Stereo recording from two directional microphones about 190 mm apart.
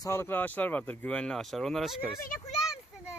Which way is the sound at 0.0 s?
15° left (ahead or behind).